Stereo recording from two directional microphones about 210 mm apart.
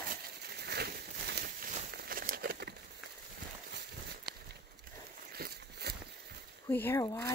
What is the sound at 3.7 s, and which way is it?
Walk, 50° right (ahead or behind).